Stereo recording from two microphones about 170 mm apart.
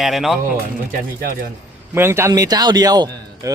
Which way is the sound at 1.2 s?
60° right (ahead or behind).